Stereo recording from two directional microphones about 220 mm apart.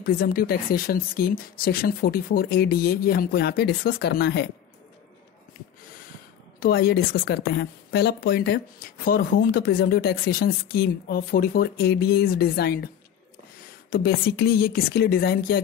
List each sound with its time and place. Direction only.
0.0 s speech: 45° left (ahead or behind)
6.6 s speech: 45° left (ahead or behind)